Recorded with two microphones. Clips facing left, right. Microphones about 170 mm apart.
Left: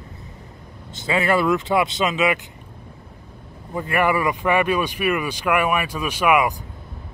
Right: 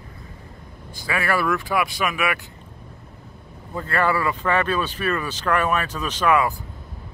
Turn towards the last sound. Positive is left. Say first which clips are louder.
# left 1 dB
turn(degrees=15)  # may be behind; listen again after turning